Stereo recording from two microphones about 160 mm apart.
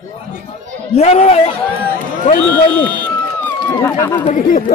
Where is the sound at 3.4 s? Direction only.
10° left (ahead or behind).